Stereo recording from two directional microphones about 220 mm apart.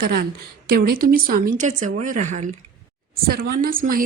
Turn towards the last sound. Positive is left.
turn(degrees=-40)  # may be behind; listen again after turning